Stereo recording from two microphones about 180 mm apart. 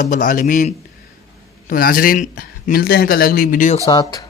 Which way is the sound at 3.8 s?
25° left (ahead or behind).